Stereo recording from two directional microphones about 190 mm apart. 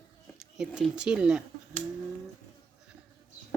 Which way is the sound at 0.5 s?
5° right (ahead or behind).